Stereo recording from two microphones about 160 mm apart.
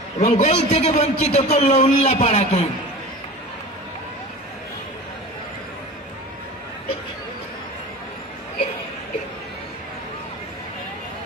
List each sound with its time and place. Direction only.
0.2 s a man's voice: 40° left (ahead or behind)